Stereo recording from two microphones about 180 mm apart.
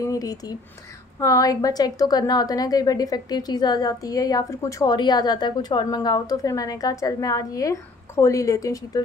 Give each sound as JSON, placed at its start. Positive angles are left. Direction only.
{"t": 0.0, "sound": "a woman's voice", "side_deg": 20}